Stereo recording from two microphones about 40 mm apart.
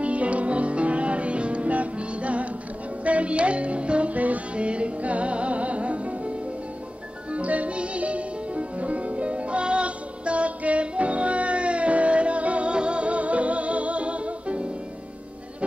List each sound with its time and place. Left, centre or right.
0.0 s music: right
7.3 s music: right